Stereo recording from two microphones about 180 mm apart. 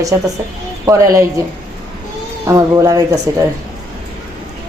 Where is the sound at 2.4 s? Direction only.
15° right (ahead or behind).